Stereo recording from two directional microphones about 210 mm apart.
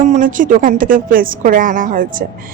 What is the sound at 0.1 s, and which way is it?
A woman's voice, 40° right (ahead or behind).